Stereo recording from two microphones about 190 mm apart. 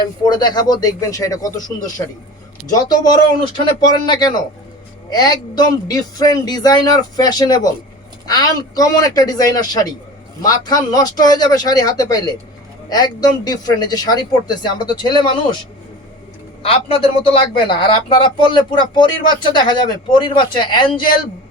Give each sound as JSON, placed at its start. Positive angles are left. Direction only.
{"t": 0.0, "sound": "speech", "side_deg": 20}
{"t": 16.6, "sound": "speech", "side_deg": 30}